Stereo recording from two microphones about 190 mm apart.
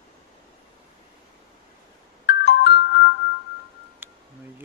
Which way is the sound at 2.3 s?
55° left (ahead or behind).